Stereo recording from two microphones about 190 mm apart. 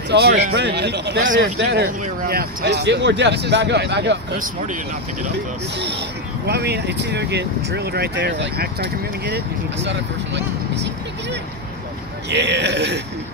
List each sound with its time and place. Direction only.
0.1 s speech: 65° right (ahead or behind)
1.3 s speech: 75° right (ahead or behind)
6.4 s speech: 60° right (ahead or behind)
9.8 s speech: 65° right (ahead or behind)
12.3 s speech: 65° right (ahead or behind)